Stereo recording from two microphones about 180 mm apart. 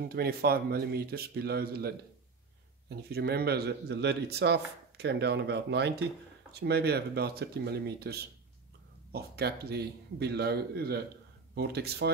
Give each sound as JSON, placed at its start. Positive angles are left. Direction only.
{"t": 0.1, "sound": "a man's voice", "side_deg": -60}
{"t": 3.1, "sound": "a man's voice", "side_deg": -60}